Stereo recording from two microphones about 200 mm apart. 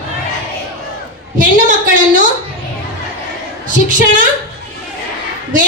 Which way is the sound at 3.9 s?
40° right (ahead or behind).